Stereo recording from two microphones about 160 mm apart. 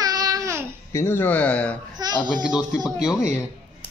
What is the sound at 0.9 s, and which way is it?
Speech, 15° left (ahead or behind).